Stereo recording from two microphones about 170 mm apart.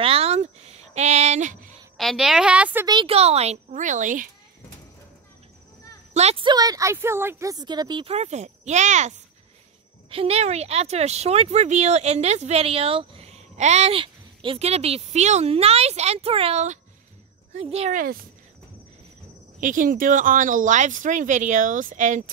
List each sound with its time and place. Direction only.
0.0 s a sound: 35° right (ahead or behind)
2.0 s a woman's voice: centre (ahead or behind)
2.9 s speech: 30° right (ahead or behind); by 4.3 s 50° right (ahead or behind)
6.1 s a woman's voice: 35° right (ahead or behind)
19.6 s speech: 55° right (ahead or behind)